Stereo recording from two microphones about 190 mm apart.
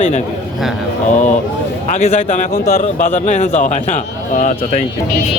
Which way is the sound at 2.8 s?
40° left (ahead or behind).